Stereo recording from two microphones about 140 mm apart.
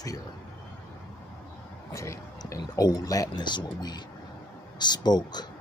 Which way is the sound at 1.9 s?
20° left (ahead or behind).